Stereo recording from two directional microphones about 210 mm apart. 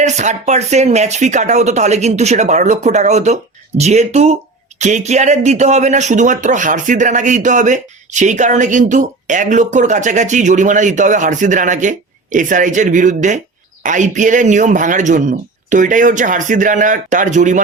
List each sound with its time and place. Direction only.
0.0 s speech: 35° right (ahead or behind)